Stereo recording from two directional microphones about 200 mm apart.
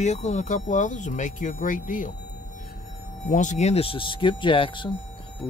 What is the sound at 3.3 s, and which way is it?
Speech, 40° left (ahead or behind).